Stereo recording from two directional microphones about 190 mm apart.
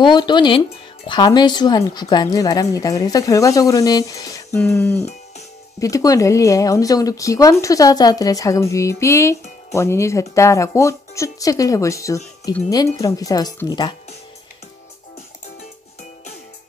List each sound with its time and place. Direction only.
0.0 s a woman's voice: 25° left (ahead or behind)